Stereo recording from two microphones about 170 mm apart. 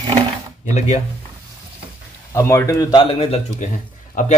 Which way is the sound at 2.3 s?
20° left (ahead or behind).